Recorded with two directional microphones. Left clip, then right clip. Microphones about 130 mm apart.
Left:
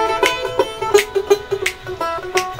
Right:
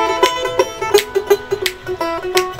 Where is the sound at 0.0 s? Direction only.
20° right (ahead or behind).